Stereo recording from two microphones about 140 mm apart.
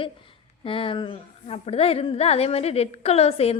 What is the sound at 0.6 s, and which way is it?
A woman's voice, 40° left (ahead or behind).